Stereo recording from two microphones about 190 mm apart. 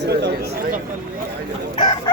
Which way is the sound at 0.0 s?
60° right (ahead or behind).